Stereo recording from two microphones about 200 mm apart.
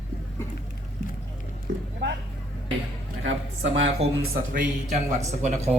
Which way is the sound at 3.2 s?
75° right (ahead or behind).